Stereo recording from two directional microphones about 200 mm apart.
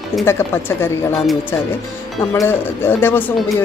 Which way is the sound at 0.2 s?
10° left (ahead or behind).